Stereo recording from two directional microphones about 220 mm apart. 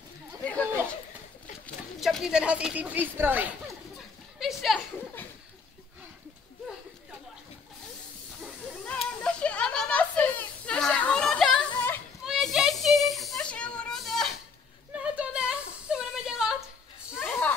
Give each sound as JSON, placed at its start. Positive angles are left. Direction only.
{"t": 0.4, "sound": "chatter", "side_deg": 5}
{"t": 2.0, "sound": "speech", "side_deg": 0}
{"t": 4.4, "sound": "a sound", "side_deg": 0}
{"t": 8.4, "sound": "hiss", "side_deg": 5}
{"t": 9.2, "sound": "a sound", "side_deg": 5}
{"t": 17.1, "sound": "snake", "side_deg": 10}